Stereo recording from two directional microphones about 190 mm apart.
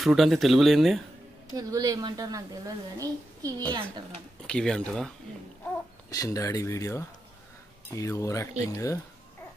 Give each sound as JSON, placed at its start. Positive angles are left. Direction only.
{"t": 0.0, "sound": "speech", "side_deg": 0}
{"t": 1.5, "sound": "a woman's voice", "side_deg": -20}
{"t": 4.4, "sound": "speech", "side_deg": 5}
{"t": 6.0, "sound": "speech", "side_deg": 15}